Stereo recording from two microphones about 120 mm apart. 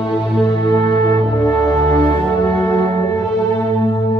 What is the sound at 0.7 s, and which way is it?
Music, 20° left (ahead or behind).